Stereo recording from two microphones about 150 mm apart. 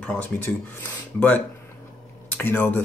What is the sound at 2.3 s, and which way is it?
Speech, 10° left (ahead or behind).